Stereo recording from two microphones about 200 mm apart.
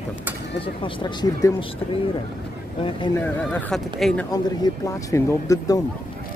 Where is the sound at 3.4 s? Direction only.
5° left (ahead or behind).